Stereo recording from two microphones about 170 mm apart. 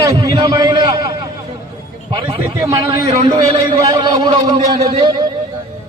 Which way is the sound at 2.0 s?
30° right (ahead or behind).